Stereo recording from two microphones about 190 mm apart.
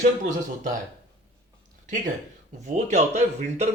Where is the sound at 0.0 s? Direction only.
40° right (ahead or behind).